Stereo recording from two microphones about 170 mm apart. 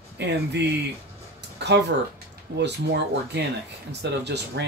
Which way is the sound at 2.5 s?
75° right (ahead or behind).